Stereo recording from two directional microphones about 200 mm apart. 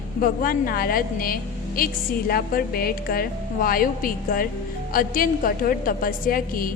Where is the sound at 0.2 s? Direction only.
45° left (ahead or behind).